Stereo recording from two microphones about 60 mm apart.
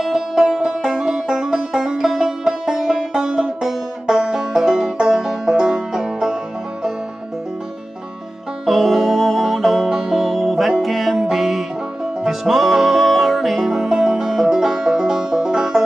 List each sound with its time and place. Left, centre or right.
0.0 s music: centre
8.6 s music: centre